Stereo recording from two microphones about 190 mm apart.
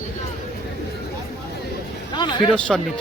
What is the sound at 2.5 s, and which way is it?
Speech, centre (ahead or behind).